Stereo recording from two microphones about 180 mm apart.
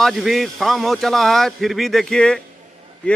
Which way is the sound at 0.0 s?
Centre (ahead or behind).